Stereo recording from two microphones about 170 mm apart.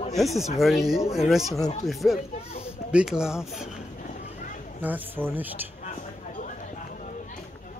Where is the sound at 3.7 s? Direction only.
50° left (ahead or behind).